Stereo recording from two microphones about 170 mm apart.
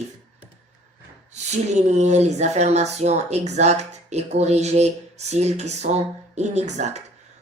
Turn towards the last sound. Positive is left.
turn(degrees=-40)  # may be behind; listen again after turning